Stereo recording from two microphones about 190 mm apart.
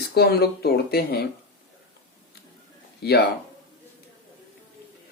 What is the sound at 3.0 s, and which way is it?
Speech, 55° left (ahead or behind).